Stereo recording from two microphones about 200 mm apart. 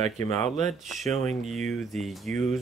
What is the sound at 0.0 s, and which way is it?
Speech, 35° right (ahead or behind).